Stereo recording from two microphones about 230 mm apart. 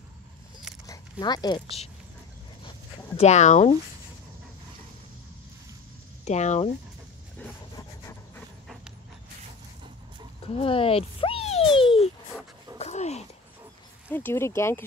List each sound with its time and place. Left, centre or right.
1.2 s speech: centre
3.2 s speech: left
6.2 s speech: left
7.4 s a sound: centre
10.4 s speech: left
12.7 s dog: left
14.1 s speech: centre